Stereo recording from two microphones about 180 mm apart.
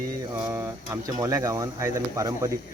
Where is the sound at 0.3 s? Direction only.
20° right (ahead or behind).